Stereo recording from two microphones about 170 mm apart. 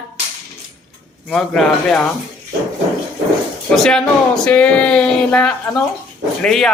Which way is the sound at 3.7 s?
Centre (ahead or behind).